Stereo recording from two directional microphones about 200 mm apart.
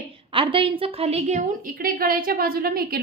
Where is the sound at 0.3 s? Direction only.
25° right (ahead or behind).